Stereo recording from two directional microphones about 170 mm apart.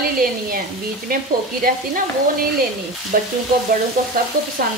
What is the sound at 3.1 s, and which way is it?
Speech, 55° right (ahead or behind).